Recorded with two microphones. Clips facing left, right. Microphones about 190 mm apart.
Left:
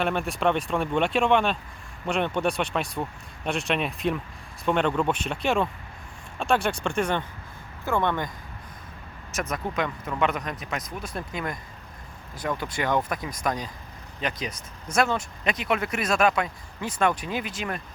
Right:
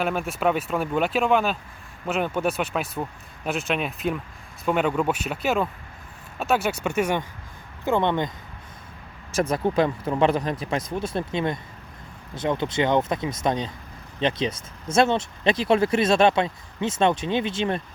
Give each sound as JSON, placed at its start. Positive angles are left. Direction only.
{"t": 0.0, "sound": "speech", "side_deg": 0}
{"t": 9.3, "sound": "speech", "side_deg": -30}